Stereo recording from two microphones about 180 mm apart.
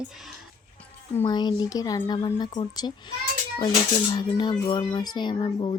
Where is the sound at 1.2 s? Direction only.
25° left (ahead or behind).